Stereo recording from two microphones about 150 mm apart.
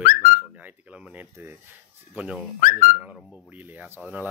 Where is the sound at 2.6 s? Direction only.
65° left (ahead or behind).